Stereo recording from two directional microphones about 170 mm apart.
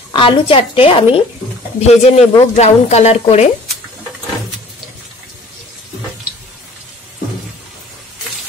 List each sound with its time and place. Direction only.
0.1 s a woman's voice: 30° left (ahead or behind)